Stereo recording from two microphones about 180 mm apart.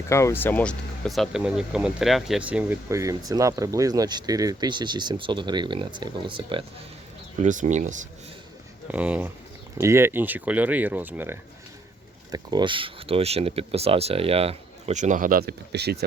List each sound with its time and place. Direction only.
0.1 s speech: 15° left (ahead or behind); by 6.7 s 25° right (ahead or behind)
7.4 s speech: 45° right (ahead or behind)
8.9 s speech: 5° right (ahead or behind)
12.3 s speech: 20° right (ahead or behind); by 16.0 s 65° right (ahead or behind)